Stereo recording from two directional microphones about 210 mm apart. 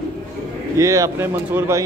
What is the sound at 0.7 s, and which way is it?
Speech, 15° right (ahead or behind).